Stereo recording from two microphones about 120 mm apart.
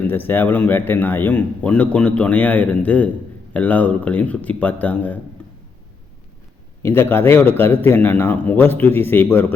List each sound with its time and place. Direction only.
0.1 s a man's voice: 15° left (ahead or behind)
6.8 s a man's voice: 20° left (ahead or behind)